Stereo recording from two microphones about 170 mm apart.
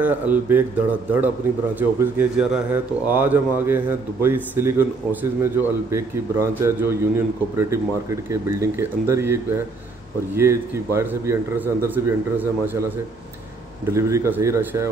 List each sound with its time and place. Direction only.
0.0 s speech: 10° right (ahead or behind)
1.8 s speech: 10° right (ahead or behind)
13.8 s speech: 15° right (ahead or behind)